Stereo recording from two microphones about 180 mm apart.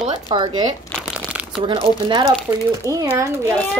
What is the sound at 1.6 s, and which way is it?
A woman's voice, 30° right (ahead or behind).